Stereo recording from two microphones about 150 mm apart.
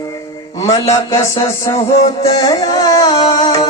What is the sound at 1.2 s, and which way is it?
Music, 20° left (ahead or behind).